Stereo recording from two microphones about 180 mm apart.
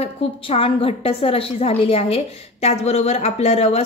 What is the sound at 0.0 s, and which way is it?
A woman's voice, 30° left (ahead or behind).